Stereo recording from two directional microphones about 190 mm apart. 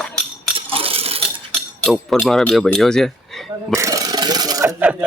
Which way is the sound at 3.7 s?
15° right (ahead or behind).